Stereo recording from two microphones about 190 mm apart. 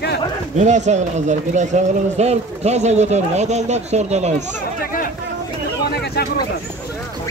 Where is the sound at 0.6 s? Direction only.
40° right (ahead or behind).